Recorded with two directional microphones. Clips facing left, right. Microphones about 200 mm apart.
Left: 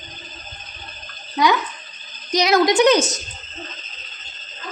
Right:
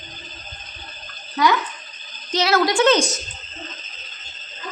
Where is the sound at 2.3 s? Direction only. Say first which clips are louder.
Left 3 dB; 15° left (ahead or behind).